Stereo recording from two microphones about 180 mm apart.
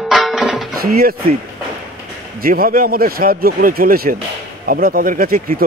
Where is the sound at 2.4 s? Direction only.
55° right (ahead or behind).